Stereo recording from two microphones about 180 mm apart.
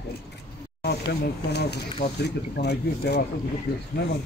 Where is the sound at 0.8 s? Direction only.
65° left (ahead or behind).